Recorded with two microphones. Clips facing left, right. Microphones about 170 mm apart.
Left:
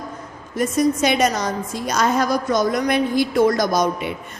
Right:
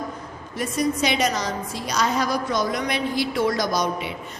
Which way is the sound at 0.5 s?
45° left (ahead or behind).